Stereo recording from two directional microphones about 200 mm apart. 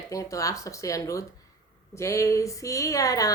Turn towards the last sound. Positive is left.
turn(degrees=15)  # may be behind; listen again after turning